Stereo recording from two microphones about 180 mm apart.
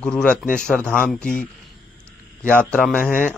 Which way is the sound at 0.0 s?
5° left (ahead or behind).